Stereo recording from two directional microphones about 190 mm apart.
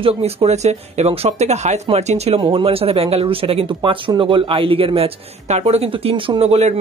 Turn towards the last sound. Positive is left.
turn(degrees=-35)  # may be behind; listen again after turning